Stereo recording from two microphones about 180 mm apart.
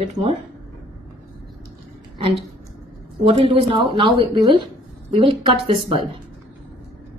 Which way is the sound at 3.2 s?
30° right (ahead or behind).